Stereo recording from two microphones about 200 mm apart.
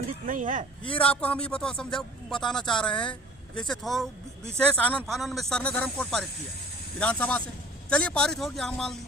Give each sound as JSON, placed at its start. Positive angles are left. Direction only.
{"t": 0.3, "sound": "speech", "side_deg": -40}
{"t": 0.9, "sound": "speech", "side_deg": 5}